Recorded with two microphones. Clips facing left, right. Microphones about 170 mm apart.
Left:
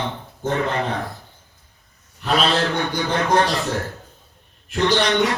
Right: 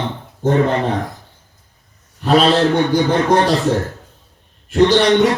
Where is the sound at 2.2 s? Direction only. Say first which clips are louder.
Right 7 dB; 35° right (ahead or behind).